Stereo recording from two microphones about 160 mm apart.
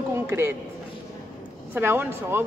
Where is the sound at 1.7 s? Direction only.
15° right (ahead or behind).